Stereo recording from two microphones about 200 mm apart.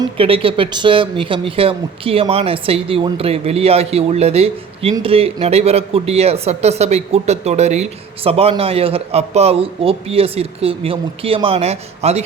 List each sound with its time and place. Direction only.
0.2 s speech: 25° right (ahead or behind)